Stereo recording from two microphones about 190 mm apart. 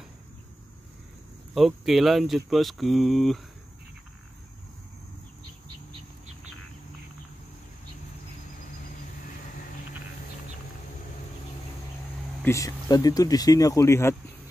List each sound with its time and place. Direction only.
1.5 s speech: centre (ahead or behind)
12.4 s speech: 15° left (ahead or behind)